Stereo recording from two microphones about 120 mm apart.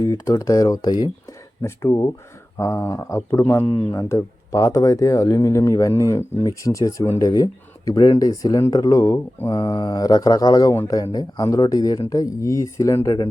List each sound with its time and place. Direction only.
0.0 s speech: 30° left (ahead or behind)
3.7 s speech: 45° left (ahead or behind)
3.9 s speech: 25° left (ahead or behind)
9.5 s mantra: 40° left (ahead or behind)
10.8 s speech: 30° left (ahead or behind)